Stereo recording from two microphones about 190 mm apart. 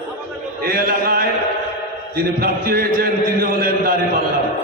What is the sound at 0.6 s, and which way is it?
Speech, 50° right (ahead or behind).